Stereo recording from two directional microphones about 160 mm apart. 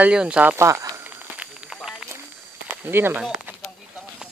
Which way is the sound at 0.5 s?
15° right (ahead or behind).